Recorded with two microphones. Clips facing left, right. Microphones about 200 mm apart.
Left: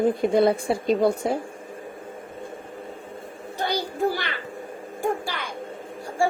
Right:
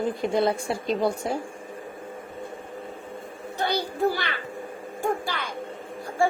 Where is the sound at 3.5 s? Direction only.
10° left (ahead or behind).